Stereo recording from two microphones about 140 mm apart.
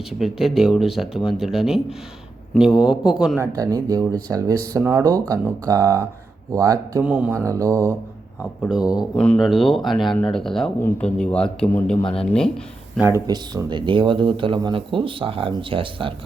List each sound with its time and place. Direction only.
0.1 s speech: 5° right (ahead or behind)
3.4 s speech: 25° right (ahead or behind)
4.8 s speech: 15° right (ahead or behind)
5.0 s speech: 25° right (ahead or behind)
7.0 s speech: 10° right (ahead or behind)
7.4 s speech: 25° right (ahead or behind)
8.6 s speech: 5° right (ahead or behind)
9.1 s a man's voice: 5° left (ahead or behind)
13.0 s speech: 15° right (ahead or behind)
13.2 s speech: 30° right (ahead or behind)